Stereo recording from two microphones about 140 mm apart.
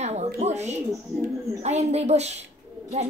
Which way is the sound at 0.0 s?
50° right (ahead or behind).